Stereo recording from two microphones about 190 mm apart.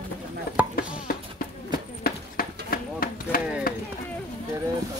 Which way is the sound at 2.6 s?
50° left (ahead or behind).